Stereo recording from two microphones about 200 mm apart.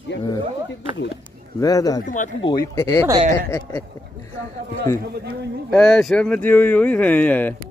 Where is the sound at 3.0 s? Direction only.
25° right (ahead or behind).